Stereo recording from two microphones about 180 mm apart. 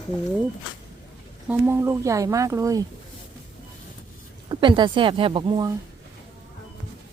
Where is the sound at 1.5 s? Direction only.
15° right (ahead or behind).